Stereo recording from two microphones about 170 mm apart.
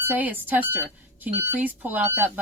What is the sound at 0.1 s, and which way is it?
Speech, 10° right (ahead or behind).